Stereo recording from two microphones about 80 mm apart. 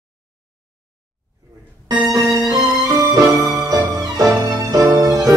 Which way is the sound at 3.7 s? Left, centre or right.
Right.